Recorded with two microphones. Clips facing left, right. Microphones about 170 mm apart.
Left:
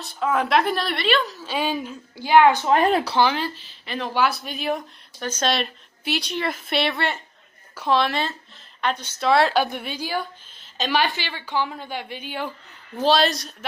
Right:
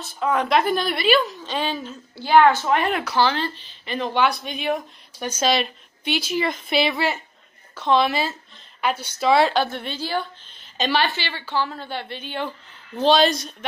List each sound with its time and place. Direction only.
0.0 s a woman's voice: centre (ahead or behind); by 2.7 s 15° left (ahead or behind)
2.7 s speech: 35° left (ahead or behind)
3.2 s a woman's voice: 10° left (ahead or behind)
7.7 s a woman's voice: 10° left (ahead or behind)
8.0 s a woman's voice: 5° right (ahead or behind)